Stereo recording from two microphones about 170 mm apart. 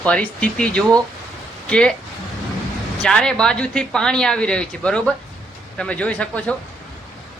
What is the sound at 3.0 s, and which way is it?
A woman's voice, 5° left (ahead or behind).